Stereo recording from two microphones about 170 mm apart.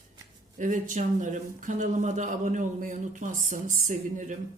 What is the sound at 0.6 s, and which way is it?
A man's voice, 50° right (ahead or behind).